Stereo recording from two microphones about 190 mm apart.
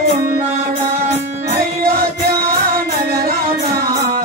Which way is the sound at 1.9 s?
50° right (ahead or behind).